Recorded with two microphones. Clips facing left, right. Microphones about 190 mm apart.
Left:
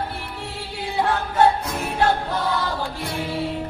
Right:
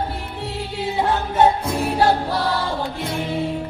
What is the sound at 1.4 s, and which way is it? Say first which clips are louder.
Music: right 2 dB; 30° right (ahead or behind).